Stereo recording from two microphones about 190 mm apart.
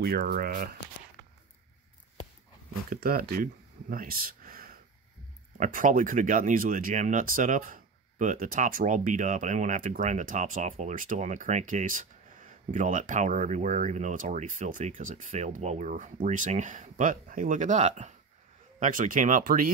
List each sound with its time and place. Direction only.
0.0 s speech: 50° right (ahead or behind)
2.9 s speech: 50° right (ahead or behind)